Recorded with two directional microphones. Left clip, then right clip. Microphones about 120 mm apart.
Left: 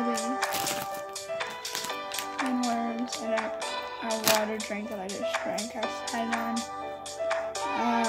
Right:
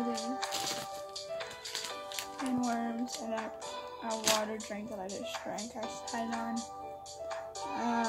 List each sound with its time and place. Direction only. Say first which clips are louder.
0.0 s music: left 7 dB; 40° left (ahead or behind)
2.3 s music: left 5 dB; 30° left (ahead or behind)
2.7 s music: left 5 dB; centre (ahead or behind)
4.3 s speech: left 5 dB; 90° left
6.2 s music: left 7 dB; 40° left (ahead or behind)